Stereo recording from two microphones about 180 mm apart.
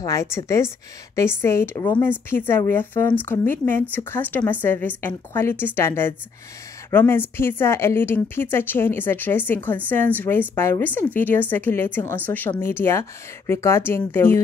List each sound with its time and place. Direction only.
0.0 s speech: 15° left (ahead or behind)